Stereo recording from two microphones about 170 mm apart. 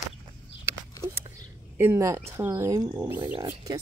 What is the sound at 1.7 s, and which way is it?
Speech, 15° right (ahead or behind).